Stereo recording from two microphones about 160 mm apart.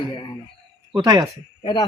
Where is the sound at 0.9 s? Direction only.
25° right (ahead or behind).